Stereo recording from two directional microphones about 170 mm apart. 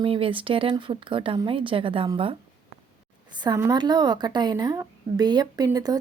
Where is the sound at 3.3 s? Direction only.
25° right (ahead or behind).